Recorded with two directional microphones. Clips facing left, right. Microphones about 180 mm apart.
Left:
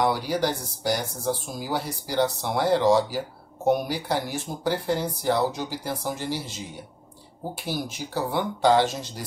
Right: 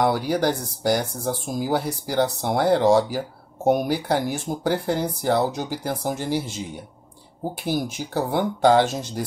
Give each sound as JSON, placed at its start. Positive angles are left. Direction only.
{"t": 0.0, "sound": "speech", "side_deg": -55}
{"t": 7.6, "sound": "speech", "side_deg": -50}